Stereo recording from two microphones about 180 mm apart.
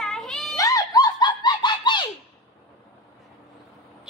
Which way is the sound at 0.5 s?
20° left (ahead or behind).